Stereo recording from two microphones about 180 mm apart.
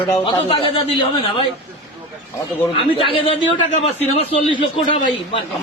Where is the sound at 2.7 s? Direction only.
30° left (ahead or behind).